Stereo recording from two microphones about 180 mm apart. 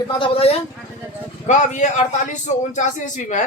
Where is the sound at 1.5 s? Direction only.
40° left (ahead or behind).